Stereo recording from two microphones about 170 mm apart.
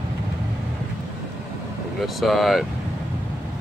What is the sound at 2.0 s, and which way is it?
Speech, centre (ahead or behind).